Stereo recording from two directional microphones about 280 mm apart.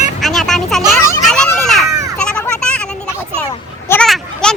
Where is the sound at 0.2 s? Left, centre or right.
Centre.